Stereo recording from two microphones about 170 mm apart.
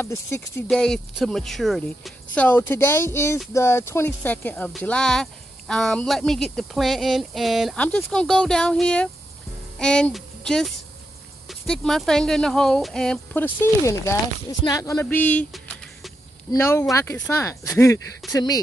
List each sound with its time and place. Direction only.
0.0 s speech: 15° left (ahead or behind)
0.7 s speech: 5° left (ahead or behind)
16.5 s speech: 15° left (ahead or behind)